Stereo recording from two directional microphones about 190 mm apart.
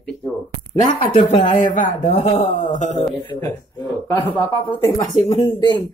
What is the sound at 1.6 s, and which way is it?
Speech, 40° left (ahead or behind).